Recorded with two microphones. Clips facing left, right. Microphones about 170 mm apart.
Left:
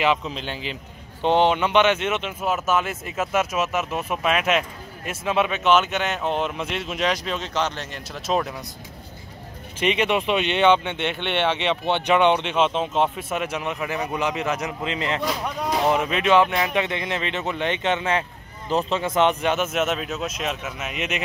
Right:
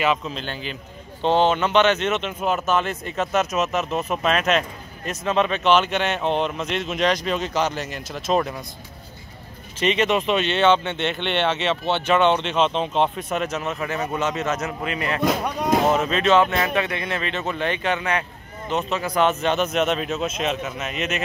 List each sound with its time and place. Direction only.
0.0 s speech: 15° left (ahead or behind)
9.8 s speech: 10° left (ahead or behind)
19.4 s speech: 10° left (ahead or behind)